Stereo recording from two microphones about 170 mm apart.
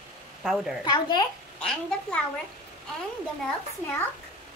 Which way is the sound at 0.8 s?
25° left (ahead or behind).